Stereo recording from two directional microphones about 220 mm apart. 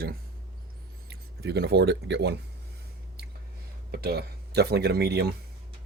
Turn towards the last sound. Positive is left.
turn(degrees=-45)  # may be behind; listen again after turning